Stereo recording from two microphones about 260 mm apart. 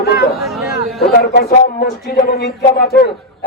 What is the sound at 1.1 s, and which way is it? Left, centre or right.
Speech, left.